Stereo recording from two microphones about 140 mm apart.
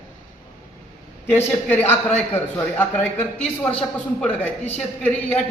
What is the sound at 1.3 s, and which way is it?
A woman's voice, 15° left (ahead or behind).